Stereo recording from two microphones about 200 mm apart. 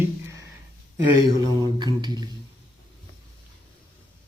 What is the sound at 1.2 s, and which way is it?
Mantra, 20° right (ahead or behind).